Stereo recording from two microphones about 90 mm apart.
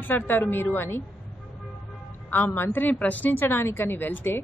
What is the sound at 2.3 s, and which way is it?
A woman's voice, 25° left (ahead or behind).